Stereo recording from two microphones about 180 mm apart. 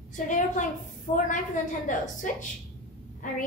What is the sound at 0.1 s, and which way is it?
A woman's voice, 45° left (ahead or behind).